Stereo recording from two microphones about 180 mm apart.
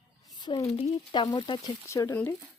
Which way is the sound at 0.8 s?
25° left (ahead or behind).